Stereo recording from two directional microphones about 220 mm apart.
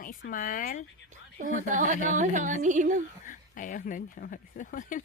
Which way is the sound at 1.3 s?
35° right (ahead or behind).